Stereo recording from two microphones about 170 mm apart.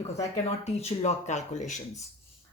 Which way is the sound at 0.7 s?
40° left (ahead or behind).